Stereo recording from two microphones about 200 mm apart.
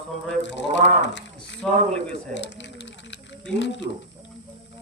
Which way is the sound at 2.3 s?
60° left (ahead or behind).